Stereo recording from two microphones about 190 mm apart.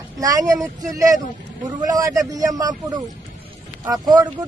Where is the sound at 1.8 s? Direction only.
20° right (ahead or behind).